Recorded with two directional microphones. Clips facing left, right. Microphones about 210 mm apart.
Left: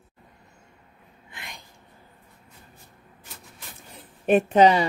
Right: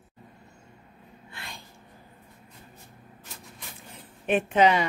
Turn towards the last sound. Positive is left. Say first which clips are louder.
# left 4 dB
turn(degrees=35)  # may be behind; listen again after turning